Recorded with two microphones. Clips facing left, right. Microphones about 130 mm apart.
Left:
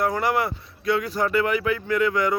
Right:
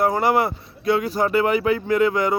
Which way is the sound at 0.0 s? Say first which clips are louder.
Right 4 dB; 30° right (ahead or behind).